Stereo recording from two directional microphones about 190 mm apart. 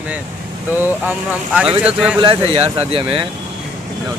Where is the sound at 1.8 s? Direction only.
5° right (ahead or behind).